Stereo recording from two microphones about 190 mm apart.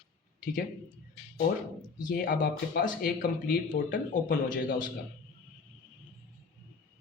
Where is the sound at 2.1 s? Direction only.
50° left (ahead or behind).